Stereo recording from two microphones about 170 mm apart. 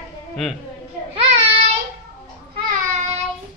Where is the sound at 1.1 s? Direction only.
35° right (ahead or behind).